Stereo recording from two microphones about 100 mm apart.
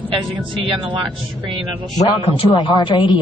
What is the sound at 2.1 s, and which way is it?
A man's voice, 65° left (ahead or behind).